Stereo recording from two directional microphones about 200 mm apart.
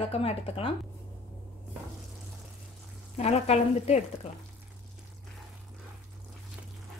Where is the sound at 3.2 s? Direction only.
30° left (ahead or behind).